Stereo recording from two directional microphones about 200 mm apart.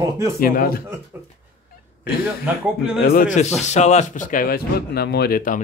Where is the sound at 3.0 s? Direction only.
40° left (ahead or behind).